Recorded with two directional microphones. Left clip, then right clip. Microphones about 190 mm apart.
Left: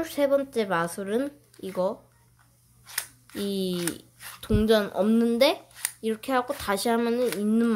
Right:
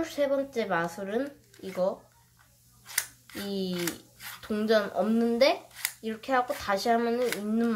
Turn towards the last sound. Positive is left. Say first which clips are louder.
# left 4 dB
turn(degrees=50)  # may be behind; listen again after turning